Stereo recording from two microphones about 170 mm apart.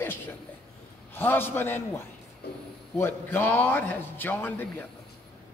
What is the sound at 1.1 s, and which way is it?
A man's voice, 10° left (ahead or behind).